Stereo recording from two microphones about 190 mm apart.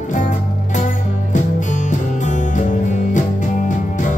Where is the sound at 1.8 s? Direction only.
40° left (ahead or behind).